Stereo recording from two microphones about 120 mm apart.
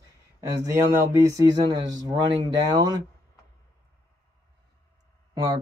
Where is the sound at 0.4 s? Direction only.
25° right (ahead or behind).